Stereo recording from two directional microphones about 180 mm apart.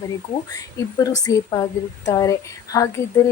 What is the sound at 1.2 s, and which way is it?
Speech, 20° left (ahead or behind).